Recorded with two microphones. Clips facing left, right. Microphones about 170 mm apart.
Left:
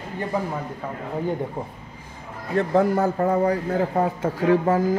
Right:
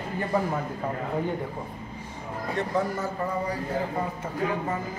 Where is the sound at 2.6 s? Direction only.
60° left (ahead or behind).